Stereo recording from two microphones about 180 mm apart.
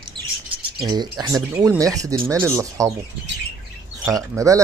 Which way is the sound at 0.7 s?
25° right (ahead or behind).